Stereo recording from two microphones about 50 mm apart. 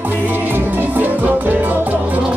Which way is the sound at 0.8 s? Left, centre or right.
Right.